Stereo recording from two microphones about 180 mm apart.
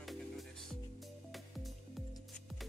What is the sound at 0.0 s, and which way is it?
Music, centre (ahead or behind).